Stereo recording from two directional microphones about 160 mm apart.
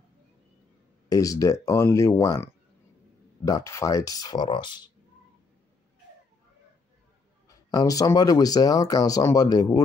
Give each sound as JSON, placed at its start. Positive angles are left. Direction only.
{"t": 1.0, "sound": "speech", "side_deg": 20}
{"t": 7.4, "sound": "speech", "side_deg": 20}